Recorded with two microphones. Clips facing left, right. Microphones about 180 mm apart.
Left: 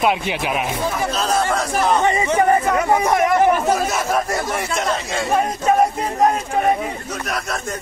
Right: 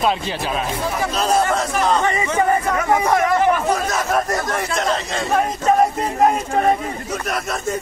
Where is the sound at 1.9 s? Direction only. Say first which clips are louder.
Left 3 dB; 20° left (ahead or behind).